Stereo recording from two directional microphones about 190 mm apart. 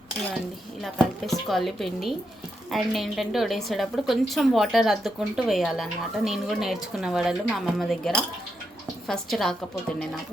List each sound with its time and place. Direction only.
0.8 s a woman's voice: centre (ahead or behind)